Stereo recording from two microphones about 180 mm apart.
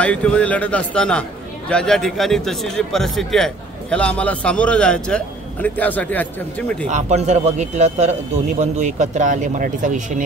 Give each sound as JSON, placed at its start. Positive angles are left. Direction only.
{"t": 0.0, "sound": "speech", "side_deg": 5}
{"t": 6.9, "sound": "a man's voice", "side_deg": -40}